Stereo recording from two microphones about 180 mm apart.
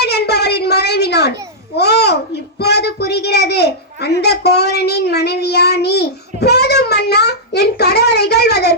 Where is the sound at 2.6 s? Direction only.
65° left (ahead or behind).